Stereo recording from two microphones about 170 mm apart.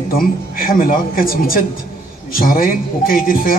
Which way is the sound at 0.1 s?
55° left (ahead or behind).